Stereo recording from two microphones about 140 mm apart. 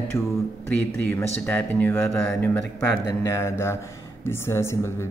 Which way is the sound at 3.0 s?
20° left (ahead or behind).